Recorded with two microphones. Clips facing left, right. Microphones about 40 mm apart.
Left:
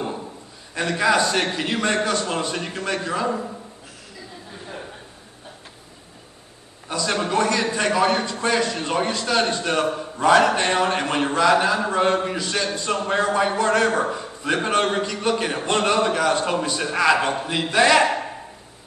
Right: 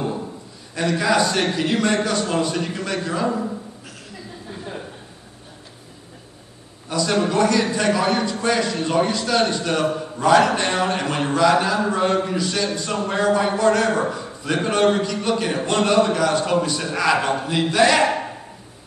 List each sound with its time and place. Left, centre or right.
0.7 s a man's voice: left
6.9 s a man's voice: left
9.9 s a man's voice: centre